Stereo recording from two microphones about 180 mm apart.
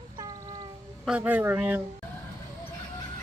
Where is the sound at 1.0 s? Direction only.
5° right (ahead or behind).